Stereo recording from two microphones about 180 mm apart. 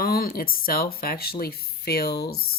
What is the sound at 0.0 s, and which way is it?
Speech, 55° left (ahead or behind).